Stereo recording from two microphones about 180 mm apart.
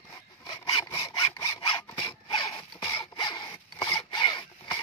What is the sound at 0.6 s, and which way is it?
Sawing, 20° left (ahead or behind).